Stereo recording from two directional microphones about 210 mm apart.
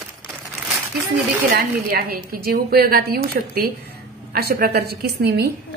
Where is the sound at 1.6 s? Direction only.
45° right (ahead or behind).